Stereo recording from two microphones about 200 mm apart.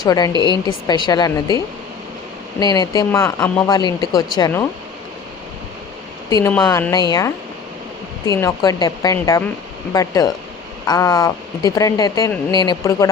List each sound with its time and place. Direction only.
0.0 s a woman's voice: 20° left (ahead or behind)
3.7 s a woman's voice: 20° left (ahead or behind)
6.3 s a woman's voice: 15° left (ahead or behind)